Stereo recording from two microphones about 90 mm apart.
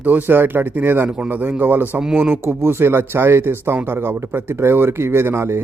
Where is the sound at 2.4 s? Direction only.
25° right (ahead or behind).